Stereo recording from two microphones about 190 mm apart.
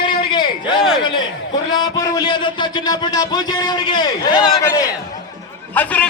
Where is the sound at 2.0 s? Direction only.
20° left (ahead or behind).